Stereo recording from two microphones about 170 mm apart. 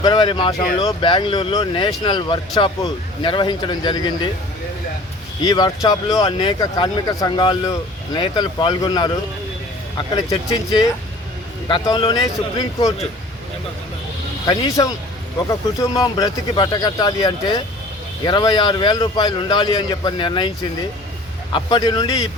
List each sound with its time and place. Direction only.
0.0 s speech: 25° left (ahead or behind)
5.4 s speech: 25° left (ahead or behind)
14.4 s speech: 25° left (ahead or behind)
21.5 s speech: 25° left (ahead or behind)